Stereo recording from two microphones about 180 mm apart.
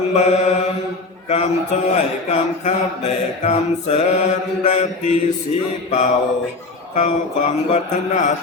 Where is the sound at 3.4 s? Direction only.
35° left (ahead or behind).